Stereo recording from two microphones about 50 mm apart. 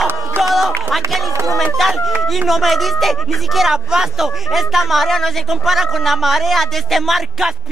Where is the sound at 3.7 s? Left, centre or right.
Centre.